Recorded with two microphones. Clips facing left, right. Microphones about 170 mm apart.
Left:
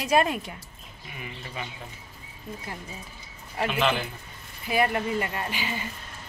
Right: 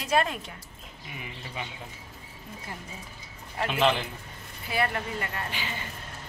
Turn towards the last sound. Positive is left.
turn(degrees=10)  # may be behind; listen again after turning